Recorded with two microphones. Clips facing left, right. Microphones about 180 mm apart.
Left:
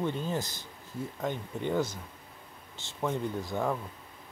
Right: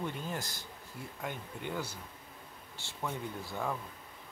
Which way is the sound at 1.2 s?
10° right (ahead or behind).